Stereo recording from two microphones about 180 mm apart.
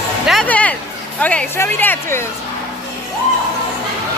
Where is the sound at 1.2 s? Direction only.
10° left (ahead or behind).